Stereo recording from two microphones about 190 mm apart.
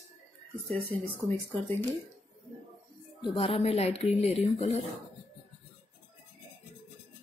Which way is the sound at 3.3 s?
30° left (ahead or behind).